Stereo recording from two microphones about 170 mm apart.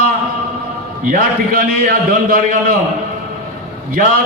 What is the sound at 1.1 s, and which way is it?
A man's voice, 55° right (ahead or behind).